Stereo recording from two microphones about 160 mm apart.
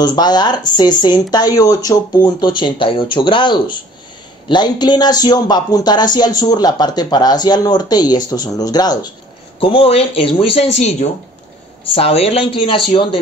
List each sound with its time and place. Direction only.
0.0 s a man's voice: 25° left (ahead or behind)
9.6 s speech: 35° left (ahead or behind)